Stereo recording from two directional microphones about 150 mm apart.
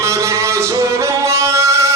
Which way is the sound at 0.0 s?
20° right (ahead or behind).